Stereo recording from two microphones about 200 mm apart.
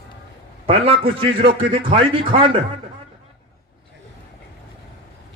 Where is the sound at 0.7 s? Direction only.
25° right (ahead or behind).